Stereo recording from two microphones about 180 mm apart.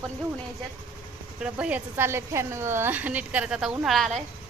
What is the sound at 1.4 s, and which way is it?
A woman's voice, 5° right (ahead or behind).